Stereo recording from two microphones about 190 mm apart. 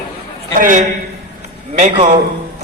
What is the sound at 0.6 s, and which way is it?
A woman's voice, 45° right (ahead or behind).